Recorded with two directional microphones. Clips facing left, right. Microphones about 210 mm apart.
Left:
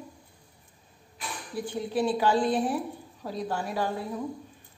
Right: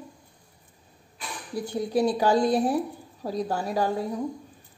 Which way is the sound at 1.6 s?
40° right (ahead or behind).